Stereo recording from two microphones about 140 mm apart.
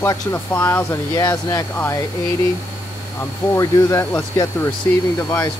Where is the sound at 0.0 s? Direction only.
20° left (ahead or behind).